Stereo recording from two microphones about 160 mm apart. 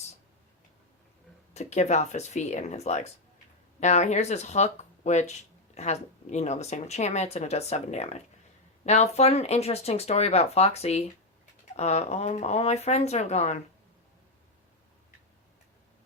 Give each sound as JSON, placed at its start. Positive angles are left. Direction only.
{"t": 1.5, "sound": "speech", "side_deg": 45}